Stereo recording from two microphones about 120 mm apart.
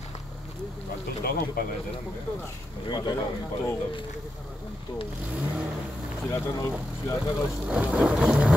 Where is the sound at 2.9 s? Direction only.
35° left (ahead or behind).